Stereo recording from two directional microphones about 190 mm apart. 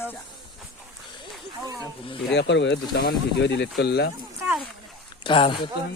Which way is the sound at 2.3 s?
70° left (ahead or behind).